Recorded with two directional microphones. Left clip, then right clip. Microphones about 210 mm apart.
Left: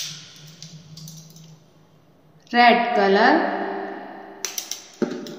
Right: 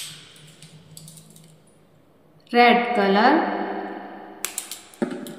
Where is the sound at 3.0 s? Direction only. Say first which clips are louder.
Left 2 dB; 5° right (ahead or behind).